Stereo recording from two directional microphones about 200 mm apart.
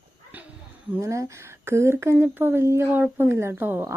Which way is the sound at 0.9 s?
15° right (ahead or behind).